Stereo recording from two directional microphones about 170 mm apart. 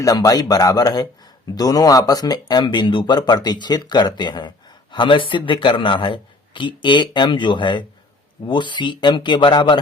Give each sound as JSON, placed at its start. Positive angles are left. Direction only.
{"t": 0.0, "sound": "speech", "side_deg": 20}